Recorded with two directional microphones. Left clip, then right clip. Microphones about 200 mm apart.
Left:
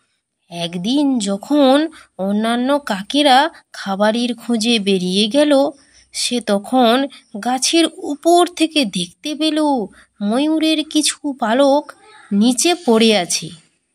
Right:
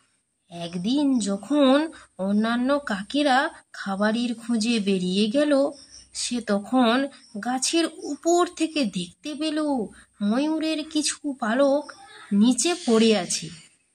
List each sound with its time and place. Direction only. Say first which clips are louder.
0.5 s speech: left 7 dB; 30° left (ahead or behind)